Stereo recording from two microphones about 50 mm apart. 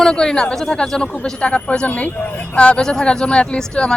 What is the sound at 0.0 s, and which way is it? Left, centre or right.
A man's voice, centre.